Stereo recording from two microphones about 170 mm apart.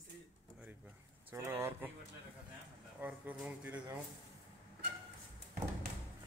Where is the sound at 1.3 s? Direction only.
15° right (ahead or behind).